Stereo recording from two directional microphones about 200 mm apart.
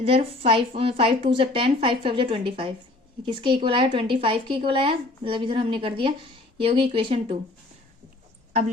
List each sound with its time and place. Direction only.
0.0 s a woman's voice: 30° right (ahead or behind)